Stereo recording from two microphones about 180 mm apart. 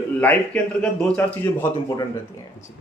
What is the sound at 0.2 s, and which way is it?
A man's voice, 10° left (ahead or behind).